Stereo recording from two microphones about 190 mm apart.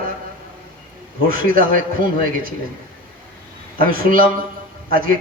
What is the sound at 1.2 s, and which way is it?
A man's voice, 50° right (ahead or behind).